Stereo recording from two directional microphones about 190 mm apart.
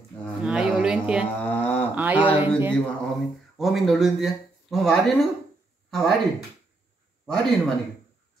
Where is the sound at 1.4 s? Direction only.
10° left (ahead or behind).